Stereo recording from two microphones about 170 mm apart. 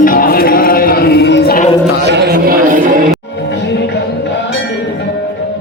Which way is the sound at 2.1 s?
80° right.